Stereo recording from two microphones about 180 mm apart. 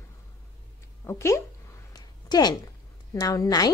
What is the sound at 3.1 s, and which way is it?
Speech, 20° left (ahead or behind).